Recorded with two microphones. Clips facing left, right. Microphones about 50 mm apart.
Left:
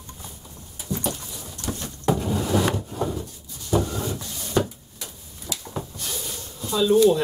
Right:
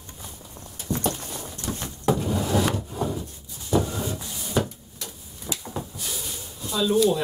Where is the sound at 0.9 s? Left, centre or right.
Right.